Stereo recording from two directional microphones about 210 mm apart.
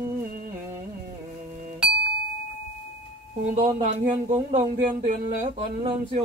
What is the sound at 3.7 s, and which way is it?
Speech, 35° right (ahead or behind).